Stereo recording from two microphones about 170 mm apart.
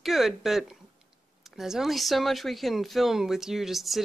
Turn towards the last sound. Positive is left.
turn(degrees=0)  # may be behind; listen again after turning